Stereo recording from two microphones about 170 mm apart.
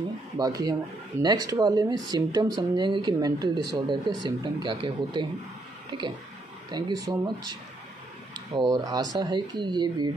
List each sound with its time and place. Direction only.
0.4 s speech: 20° right (ahead or behind)
8.5 s speech: 25° right (ahead or behind)